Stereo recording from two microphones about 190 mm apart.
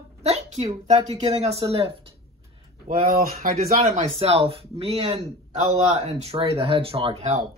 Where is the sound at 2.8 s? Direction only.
50° right (ahead or behind).